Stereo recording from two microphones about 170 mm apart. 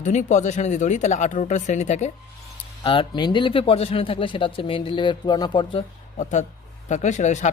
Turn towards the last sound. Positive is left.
turn(degrees=45)  # may be behind; listen again after turning